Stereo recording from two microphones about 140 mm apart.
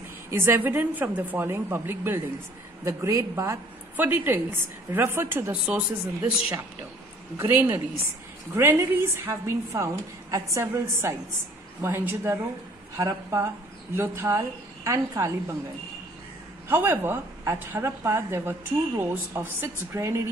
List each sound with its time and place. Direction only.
0.3 s a woman's voice: 15° right (ahead or behind)
7.3 s a woman's voice: 15° right (ahead or behind)
16.6 s a woman's voice: 15° right (ahead or behind)